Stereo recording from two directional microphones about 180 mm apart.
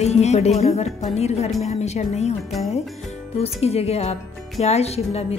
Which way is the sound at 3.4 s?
35° left (ahead or behind).